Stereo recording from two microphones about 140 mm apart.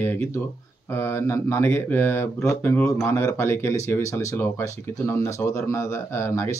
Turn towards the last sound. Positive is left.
turn(degrees=20)  # may be behind; listen again after turning